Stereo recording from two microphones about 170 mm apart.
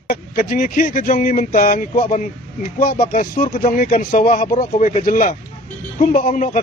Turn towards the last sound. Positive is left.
turn(degrees=50)  # may be behind; listen again after turning